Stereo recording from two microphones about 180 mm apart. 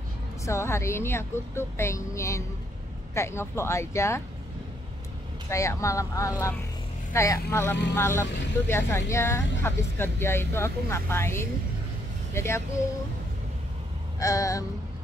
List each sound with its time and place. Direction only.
0.4 s speech: 15° left (ahead or behind)
5.5 s speech: 15° left (ahead or behind)
14.2 s a sound: 20° left (ahead or behind)